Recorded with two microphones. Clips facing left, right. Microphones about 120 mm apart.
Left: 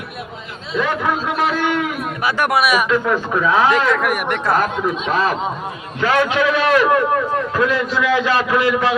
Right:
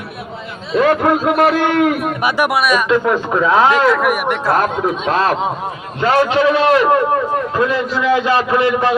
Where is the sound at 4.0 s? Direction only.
Centre (ahead or behind).